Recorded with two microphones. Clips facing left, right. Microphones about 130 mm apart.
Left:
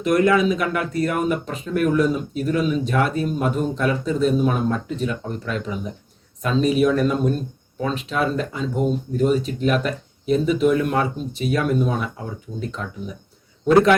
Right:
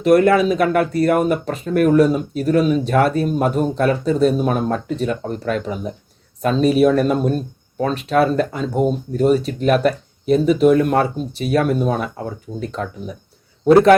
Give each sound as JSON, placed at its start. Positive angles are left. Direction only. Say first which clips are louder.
{"t": 0.1, "sound": "speech", "louder": "right 4 dB", "side_deg": -45}
{"t": 0.6, "sound": "speech", "louder": "right 7 dB", "side_deg": -55}
{"t": 1.2, "sound": "speech", "louder": "right 4 dB", "side_deg": -45}